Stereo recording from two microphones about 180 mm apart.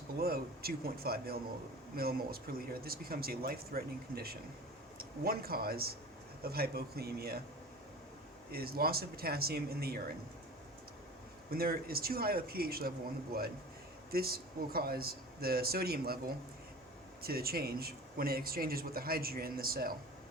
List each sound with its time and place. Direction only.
0.2 s speech: 55° right (ahead or behind)
8.5 s speech: 60° right (ahead or behind)
11.5 s speech: 55° right (ahead or behind)
14.1 s speech: 60° right (ahead or behind)